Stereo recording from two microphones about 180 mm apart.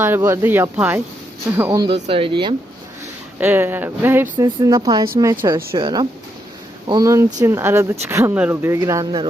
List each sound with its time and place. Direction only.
0.0 s speech: 15° right (ahead or behind)
1.8 s speech: 30° right (ahead or behind)
3.4 s speech: 10° right (ahead or behind)